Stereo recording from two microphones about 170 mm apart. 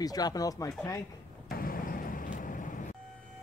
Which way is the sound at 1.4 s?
60° left (ahead or behind).